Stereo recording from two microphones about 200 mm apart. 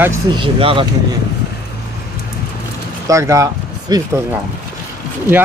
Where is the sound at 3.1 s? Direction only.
15° right (ahead or behind).